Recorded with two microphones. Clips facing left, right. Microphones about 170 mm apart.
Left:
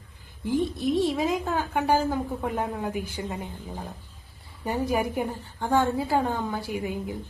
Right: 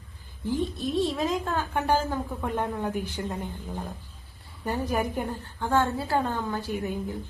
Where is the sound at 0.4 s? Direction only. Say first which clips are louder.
Left 3 dB; 15° left (ahead or behind).